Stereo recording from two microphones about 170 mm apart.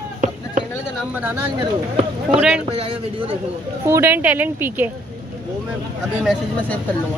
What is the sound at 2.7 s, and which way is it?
Speech, 35° right (ahead or behind).